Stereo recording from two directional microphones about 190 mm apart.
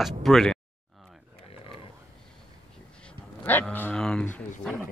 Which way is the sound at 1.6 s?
30° left (ahead or behind).